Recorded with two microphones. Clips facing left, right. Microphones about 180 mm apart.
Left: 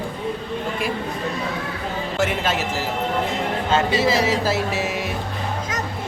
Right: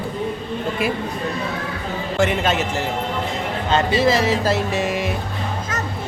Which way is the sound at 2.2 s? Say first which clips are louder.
Right 4 dB; centre (ahead or behind).